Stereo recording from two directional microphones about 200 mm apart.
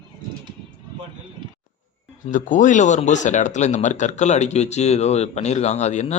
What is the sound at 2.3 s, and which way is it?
Speech, 40° left (ahead or behind).